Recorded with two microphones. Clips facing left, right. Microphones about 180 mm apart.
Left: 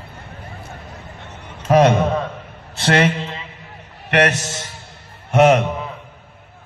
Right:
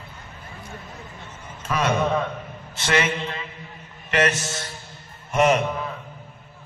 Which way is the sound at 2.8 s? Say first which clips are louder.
Left 6 dB; 65° left (ahead or behind).